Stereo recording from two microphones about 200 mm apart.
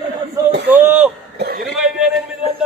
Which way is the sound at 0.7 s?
10° right (ahead or behind).